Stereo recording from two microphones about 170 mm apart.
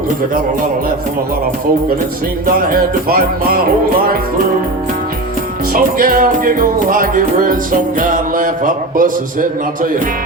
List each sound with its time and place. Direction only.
2.6 s music: 60° right (ahead or behind)
5.7 s music: 55° right (ahead or behind)